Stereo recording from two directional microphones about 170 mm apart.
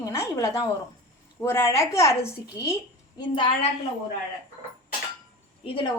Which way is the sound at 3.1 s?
30° left (ahead or behind).